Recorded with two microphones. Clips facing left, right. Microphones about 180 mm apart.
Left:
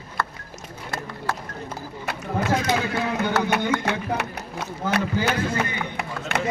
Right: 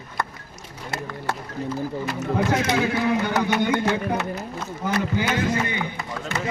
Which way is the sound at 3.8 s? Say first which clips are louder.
Right 2 dB; 70° left (ahead or behind).